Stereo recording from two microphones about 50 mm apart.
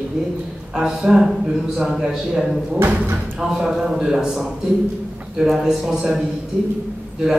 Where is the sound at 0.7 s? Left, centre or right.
Centre.